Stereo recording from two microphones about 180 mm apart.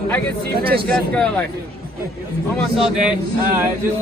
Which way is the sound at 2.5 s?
Centre (ahead or behind).